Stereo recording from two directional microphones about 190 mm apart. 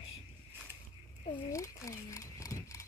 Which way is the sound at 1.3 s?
15° left (ahead or behind).